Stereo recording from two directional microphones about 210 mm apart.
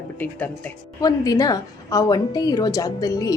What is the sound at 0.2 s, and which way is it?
A woman's voice, 10° left (ahead or behind).